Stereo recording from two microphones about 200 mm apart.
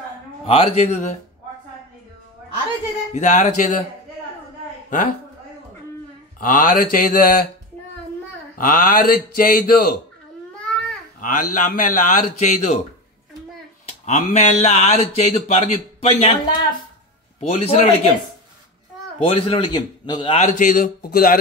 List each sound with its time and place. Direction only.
0.5 s speech: 30° left (ahead or behind)
3.1 s speech: 40° left (ahead or behind)
4.8 s a sound: 40° left (ahead or behind)
6.4 s speech: 40° left (ahead or behind)
8.5 s speech: 45° left (ahead or behind)
10.6 s babbling: 5° left (ahead or behind)
11.1 s speech: 40° left (ahead or behind)
13.8 s speech: 35° left (ahead or behind)
17.4 s speech: 30° left (ahead or behind)
19.2 s a man's voice: 30° left (ahead or behind)
20.3 s speech: 40° left (ahead or behind)